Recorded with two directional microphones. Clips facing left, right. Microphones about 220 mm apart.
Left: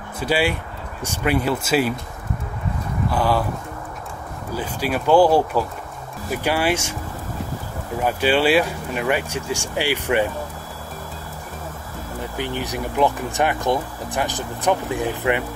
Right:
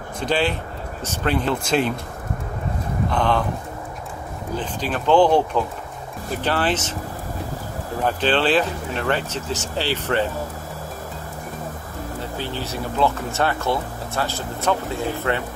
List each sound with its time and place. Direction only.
0.2 s speech: 10° left (ahead or behind)
3.1 s speech: 5° left (ahead or behind)
4.6 s speech: 10° left (ahead or behind)
8.0 s speech: 10° left (ahead or behind)
12.2 s speech: 15° left (ahead or behind)